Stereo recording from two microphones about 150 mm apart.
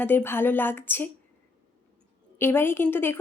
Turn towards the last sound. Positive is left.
turn(degrees=15)  # may be behind; listen again after turning